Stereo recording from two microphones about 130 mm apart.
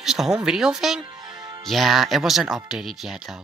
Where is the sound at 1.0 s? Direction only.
35° right (ahead or behind).